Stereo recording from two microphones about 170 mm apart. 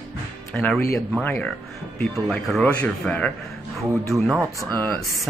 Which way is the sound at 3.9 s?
20° right (ahead or behind).